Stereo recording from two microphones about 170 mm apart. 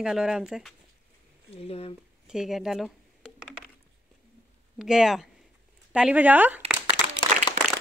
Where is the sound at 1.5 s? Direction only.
35° left (ahead or behind).